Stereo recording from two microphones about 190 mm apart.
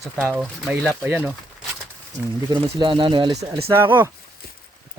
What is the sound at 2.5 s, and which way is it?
Speech, 25° right (ahead or behind).